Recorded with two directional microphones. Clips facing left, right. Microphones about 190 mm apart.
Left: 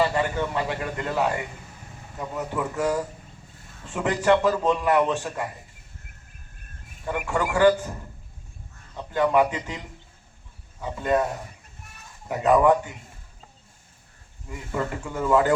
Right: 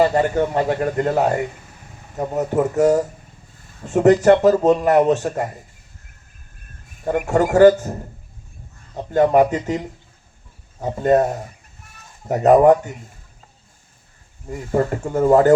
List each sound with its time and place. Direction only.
0.0 s speech: 45° right (ahead or behind)
7.0 s speech: 45° right (ahead or behind)
14.4 s speech: 40° right (ahead or behind)